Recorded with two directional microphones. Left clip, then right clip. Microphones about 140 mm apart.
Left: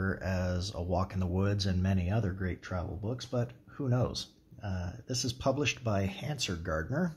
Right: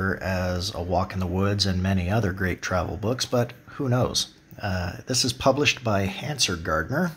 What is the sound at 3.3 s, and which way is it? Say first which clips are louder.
Speech: right 11 dB; 10° right (ahead or behind).